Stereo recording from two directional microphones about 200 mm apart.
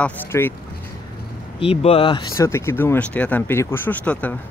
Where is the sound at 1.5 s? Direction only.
30° left (ahead or behind).